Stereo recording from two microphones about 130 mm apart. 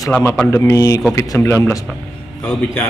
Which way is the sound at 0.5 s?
25° left (ahead or behind).